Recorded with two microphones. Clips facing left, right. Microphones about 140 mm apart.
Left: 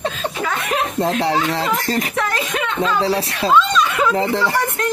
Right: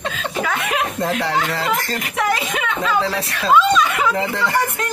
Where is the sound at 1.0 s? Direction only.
30° left (ahead or behind).